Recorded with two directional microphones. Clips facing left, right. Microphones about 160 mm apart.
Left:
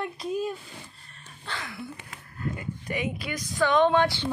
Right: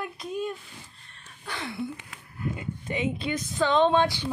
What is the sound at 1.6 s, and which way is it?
Speech, 25° right (ahead or behind).